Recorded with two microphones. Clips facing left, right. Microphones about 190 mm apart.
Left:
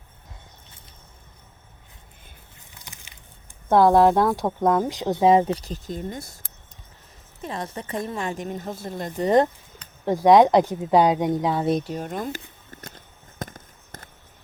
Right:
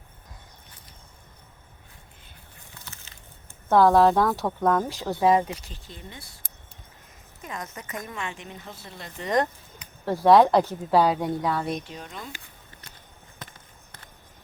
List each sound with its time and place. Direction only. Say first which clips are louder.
2.6 s crushing: even; 15° left (ahead or behind)
3.7 s speech: left 2 dB; 15° left (ahead or behind); by 6.4 s 45° left (ahead or behind)
7.4 s a woman's voice: left 6 dB; 30° left (ahead or behind)
10.1 s speech: left 2 dB; 15° left (ahead or behind)
11.8 s speech: left 10 dB; 45° left (ahead or behind)
13.4 s fireworks: left 11 dB; 45° left (ahead or behind)